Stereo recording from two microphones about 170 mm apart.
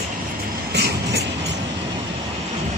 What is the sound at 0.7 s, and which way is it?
Train, 75° right (ahead or behind).